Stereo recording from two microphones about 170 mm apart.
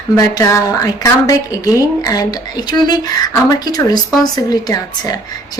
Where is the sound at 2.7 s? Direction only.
25° left (ahead or behind).